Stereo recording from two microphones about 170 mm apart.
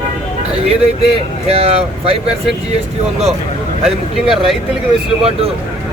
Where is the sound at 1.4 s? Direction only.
35° right (ahead or behind).